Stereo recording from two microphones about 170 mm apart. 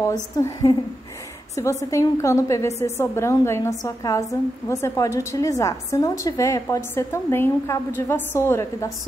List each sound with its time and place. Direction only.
0.0 s a woman's voice: 20° left (ahead or behind)